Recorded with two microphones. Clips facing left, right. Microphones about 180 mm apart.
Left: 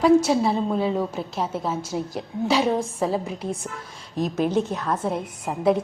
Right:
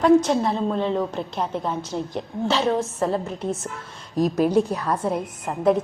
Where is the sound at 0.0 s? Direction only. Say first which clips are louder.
Even; 5° left (ahead or behind).